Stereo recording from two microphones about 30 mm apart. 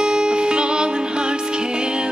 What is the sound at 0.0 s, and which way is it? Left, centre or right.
Music, right.